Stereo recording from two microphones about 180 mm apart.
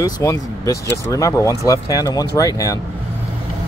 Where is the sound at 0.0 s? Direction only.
20° left (ahead or behind).